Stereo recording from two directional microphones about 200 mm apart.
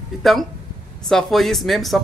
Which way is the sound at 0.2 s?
Centre (ahead or behind).